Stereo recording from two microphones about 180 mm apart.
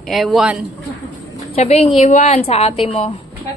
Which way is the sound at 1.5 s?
35° left (ahead or behind).